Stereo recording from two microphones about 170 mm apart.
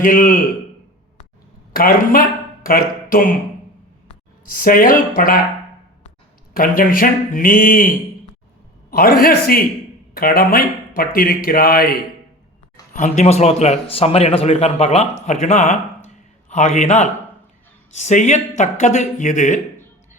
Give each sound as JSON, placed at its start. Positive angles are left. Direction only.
{"t": 0.0, "sound": "speech", "side_deg": 55}
{"t": 1.7, "sound": "speech", "side_deg": 60}
{"t": 4.4, "sound": "speech", "side_deg": 55}
{"t": 6.5, "sound": "speech", "side_deg": 60}
{"t": 12.9, "sound": "a man's voice", "side_deg": 45}